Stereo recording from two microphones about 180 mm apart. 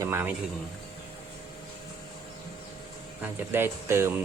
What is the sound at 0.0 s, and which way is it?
Speech, 15° right (ahead or behind).